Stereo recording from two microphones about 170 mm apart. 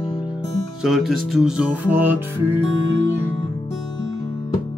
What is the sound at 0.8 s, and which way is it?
Music, centre (ahead or behind).